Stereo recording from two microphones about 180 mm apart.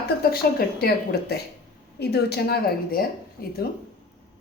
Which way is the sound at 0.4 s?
55° left (ahead or behind).